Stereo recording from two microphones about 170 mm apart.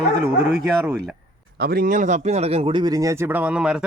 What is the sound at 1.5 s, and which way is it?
Speech, 65° right (ahead or behind).